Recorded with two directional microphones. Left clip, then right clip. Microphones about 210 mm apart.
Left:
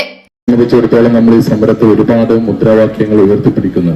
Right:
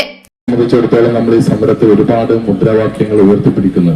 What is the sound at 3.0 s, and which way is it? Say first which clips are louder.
Speech: left 2 dB; 35° left (ahead or behind).